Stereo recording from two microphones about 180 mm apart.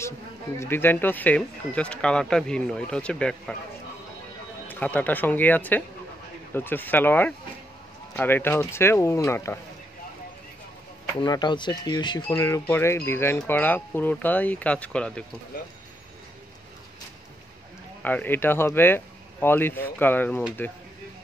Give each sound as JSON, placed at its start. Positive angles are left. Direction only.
{"t": 0.6, "sound": "speech", "side_deg": 10}
{"t": 4.6, "sound": "speech", "side_deg": 10}
{"t": 11.1, "sound": "speech", "side_deg": 25}
{"t": 12.4, "sound": "speech", "side_deg": 15}
{"t": 18.0, "sound": "speech", "side_deg": 10}